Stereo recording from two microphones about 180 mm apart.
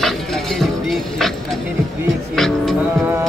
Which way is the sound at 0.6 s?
Centre (ahead or behind).